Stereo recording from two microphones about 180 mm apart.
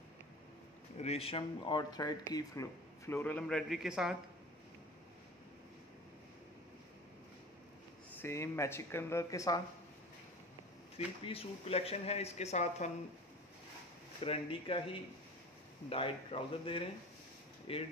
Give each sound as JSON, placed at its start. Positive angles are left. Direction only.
{"t": 0.9, "sound": "a man's voice", "side_deg": 35}
{"t": 8.1, "sound": "speech", "side_deg": 15}
{"t": 11.2, "sound": "speech", "side_deg": 35}
{"t": 14.2, "sound": "speech", "side_deg": 30}